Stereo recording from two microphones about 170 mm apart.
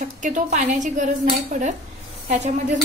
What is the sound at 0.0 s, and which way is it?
Speech, 50° right (ahead or behind).